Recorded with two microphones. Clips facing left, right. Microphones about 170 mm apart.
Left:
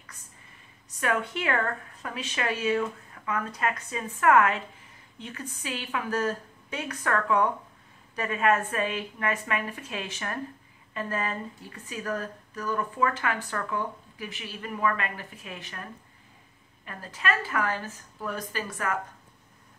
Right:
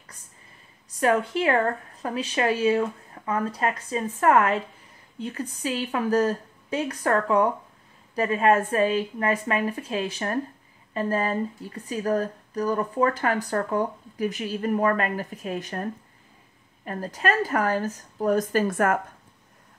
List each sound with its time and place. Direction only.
0.9 s speech: 35° right (ahead or behind)